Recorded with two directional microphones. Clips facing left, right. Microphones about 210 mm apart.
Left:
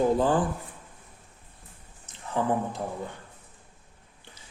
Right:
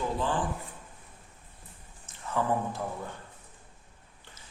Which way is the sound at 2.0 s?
20° left (ahead or behind).